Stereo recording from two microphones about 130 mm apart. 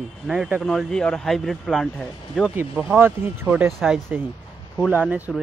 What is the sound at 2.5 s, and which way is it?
Speech, 15° right (ahead or behind).